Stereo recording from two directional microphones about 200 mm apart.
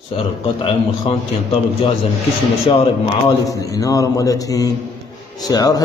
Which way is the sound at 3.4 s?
15° left (ahead or behind).